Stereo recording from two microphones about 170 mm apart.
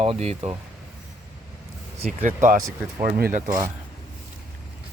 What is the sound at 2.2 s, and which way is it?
Speech, 45° right (ahead or behind).